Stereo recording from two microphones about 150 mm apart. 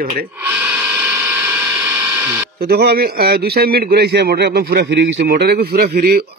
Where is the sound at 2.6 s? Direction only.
90° right.